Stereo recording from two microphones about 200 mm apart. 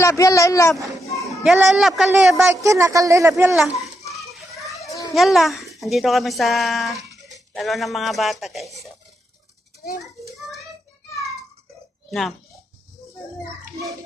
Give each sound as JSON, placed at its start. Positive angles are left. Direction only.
{"t": 0.0, "sound": "speech", "side_deg": 15}
{"t": 0.9, "sound": "speech", "side_deg": 0}
{"t": 2.3, "sound": "speech", "side_deg": -15}
{"t": 4.1, "sound": "children playing", "side_deg": 0}
{"t": 4.9, "sound": "children playing", "side_deg": 15}
{"t": 5.1, "sound": "a child's voice", "side_deg": 0}